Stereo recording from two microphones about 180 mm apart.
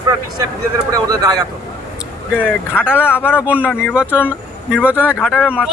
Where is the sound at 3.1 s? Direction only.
10° left (ahead or behind).